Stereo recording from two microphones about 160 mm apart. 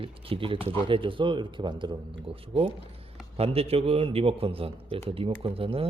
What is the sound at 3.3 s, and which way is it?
Speech, 40° right (ahead or behind).